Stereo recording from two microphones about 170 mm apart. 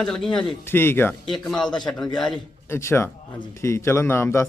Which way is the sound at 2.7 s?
15° left (ahead or behind).